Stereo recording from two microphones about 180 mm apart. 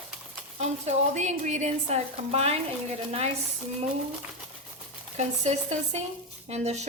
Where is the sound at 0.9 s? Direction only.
40° right (ahead or behind).